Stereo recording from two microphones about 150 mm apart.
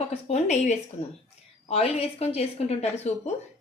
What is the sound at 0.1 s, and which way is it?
A woman's voice, 45° left (ahead or behind).